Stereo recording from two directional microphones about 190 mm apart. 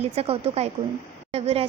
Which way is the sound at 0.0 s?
30° right (ahead or behind).